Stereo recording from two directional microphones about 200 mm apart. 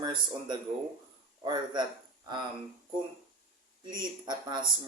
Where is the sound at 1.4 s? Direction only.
20° right (ahead or behind).